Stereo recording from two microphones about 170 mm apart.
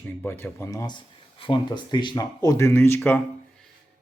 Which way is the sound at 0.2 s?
15° left (ahead or behind).